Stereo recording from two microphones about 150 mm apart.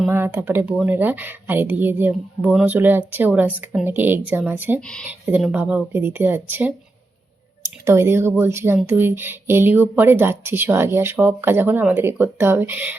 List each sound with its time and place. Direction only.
0.1 s speech: 15° right (ahead or behind)
4.8 s speech: 5° left (ahead or behind)
5.4 s speech: 5° right (ahead or behind)
7.9 s speech: 15° right (ahead or behind)